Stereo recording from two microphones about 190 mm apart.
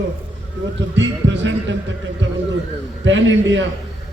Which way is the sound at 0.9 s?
75° right (ahead or behind).